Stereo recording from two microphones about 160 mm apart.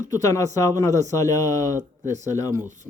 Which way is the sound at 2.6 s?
50° right (ahead or behind).